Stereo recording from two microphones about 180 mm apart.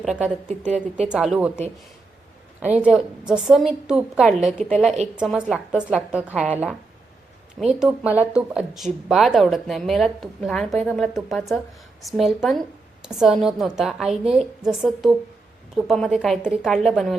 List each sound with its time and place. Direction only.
0.0 s a woman's voice: centre (ahead or behind)
0.4 s speech: 40° right (ahead or behind)
1.0 s a woman's voice: 5° right (ahead or behind)
2.6 s a woman's voice: 10° right (ahead or behind)